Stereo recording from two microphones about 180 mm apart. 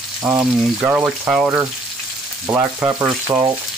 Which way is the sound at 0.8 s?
10° right (ahead or behind).